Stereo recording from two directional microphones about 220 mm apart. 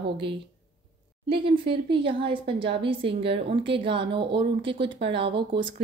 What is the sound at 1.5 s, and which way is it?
Speech, 25° right (ahead or behind).